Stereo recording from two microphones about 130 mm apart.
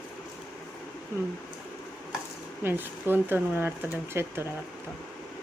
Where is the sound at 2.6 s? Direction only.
15° right (ahead or behind).